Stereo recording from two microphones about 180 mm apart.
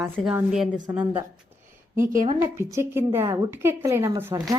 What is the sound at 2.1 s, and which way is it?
Speech, 45° right (ahead or behind).